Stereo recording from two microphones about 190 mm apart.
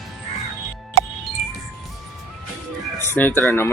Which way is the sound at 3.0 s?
10° left (ahead or behind).